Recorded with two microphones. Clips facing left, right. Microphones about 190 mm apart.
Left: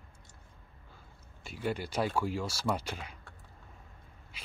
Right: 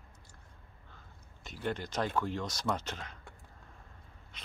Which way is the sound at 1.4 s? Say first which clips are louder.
Left 2 dB; 10° left (ahead or behind).